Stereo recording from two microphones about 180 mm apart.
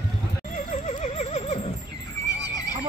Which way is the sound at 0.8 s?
40° left (ahead or behind).